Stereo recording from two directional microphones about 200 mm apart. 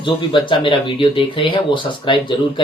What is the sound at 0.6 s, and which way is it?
A man's voice, 25° left (ahead or behind).